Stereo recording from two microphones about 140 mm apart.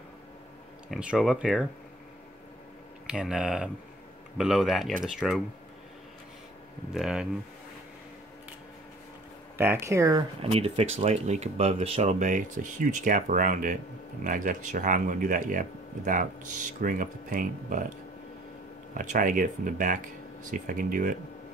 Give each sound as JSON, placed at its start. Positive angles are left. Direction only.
{"t": 0.8, "sound": "speech", "side_deg": -5}
{"t": 3.1, "sound": "speech", "side_deg": -5}
{"t": 6.9, "sound": "speech", "side_deg": 0}
{"t": 9.6, "sound": "speech", "side_deg": -15}
{"t": 10.4, "sound": "speech", "side_deg": -45}
{"t": 18.9, "sound": "speech", "side_deg": -70}